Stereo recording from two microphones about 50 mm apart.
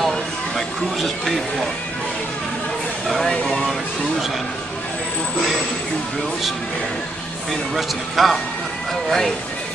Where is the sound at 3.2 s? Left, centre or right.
Centre.